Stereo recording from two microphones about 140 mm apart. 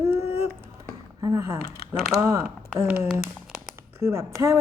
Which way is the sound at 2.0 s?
Centre (ahead or behind).